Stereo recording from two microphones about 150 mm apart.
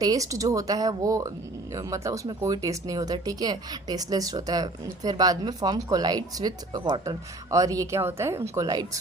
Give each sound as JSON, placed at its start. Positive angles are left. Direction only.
{"t": 0.0, "sound": "speech", "side_deg": -25}